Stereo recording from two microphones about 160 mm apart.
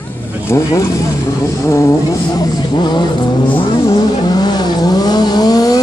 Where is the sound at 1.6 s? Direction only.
20° left (ahead or behind).